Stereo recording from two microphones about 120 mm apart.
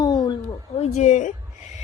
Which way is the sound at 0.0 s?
35° left (ahead or behind).